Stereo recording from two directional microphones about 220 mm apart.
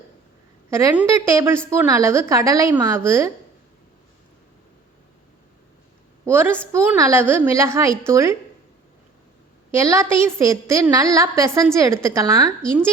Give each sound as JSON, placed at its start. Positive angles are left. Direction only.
{"t": 0.7, "sound": "a woman's voice", "side_deg": -15}
{"t": 6.2, "sound": "a woman's voice", "side_deg": -10}
{"t": 9.7, "sound": "a woman's voice", "side_deg": -10}